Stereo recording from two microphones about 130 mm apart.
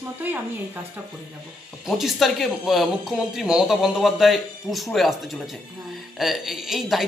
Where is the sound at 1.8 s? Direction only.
Centre (ahead or behind).